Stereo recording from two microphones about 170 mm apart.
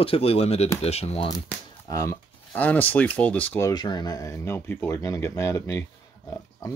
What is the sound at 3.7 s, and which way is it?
Speech, 25° left (ahead or behind).